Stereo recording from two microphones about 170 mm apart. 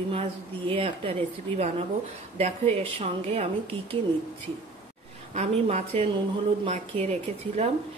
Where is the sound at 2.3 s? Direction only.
40° right (ahead or behind).